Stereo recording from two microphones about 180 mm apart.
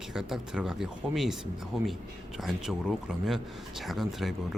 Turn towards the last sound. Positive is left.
turn(degrees=0)  # may be behind; listen again after turning